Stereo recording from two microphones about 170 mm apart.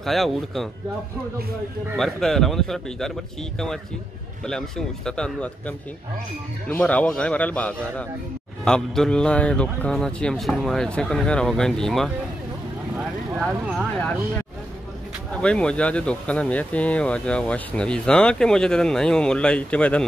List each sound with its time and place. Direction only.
0.0 s speech: centre (ahead or behind)
2.0 s a man's voice: centre (ahead or behind)
13.4 s speech: centre (ahead or behind)
15.4 s speech: 5° left (ahead or behind)